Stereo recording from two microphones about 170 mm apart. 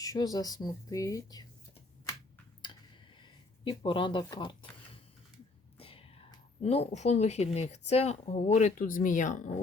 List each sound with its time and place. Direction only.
0.0 s speech: 20° left (ahead or behind)
3.2 s speech: 30° left (ahead or behind)
5.7 s whispering: 35° left (ahead or behind)
6.6 s speech: 40° left (ahead or behind)